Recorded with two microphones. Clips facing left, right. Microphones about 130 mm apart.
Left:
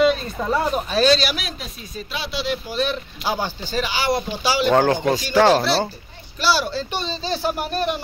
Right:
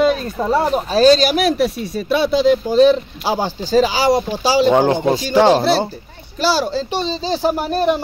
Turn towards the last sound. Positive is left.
turn(degrees=-35)  # may be behind; listen again after turning